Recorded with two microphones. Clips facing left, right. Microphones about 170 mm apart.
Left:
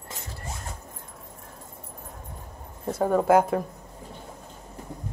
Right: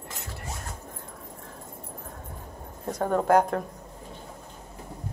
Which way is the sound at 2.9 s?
5° left (ahead or behind).